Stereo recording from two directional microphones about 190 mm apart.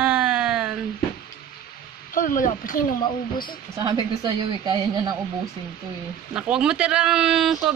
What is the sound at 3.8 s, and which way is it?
A man's voice, 20° right (ahead or behind).